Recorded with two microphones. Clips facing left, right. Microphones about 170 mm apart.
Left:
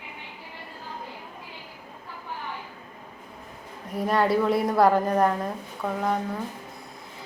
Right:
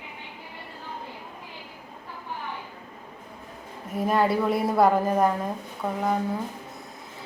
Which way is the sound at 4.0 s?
Centre (ahead or behind).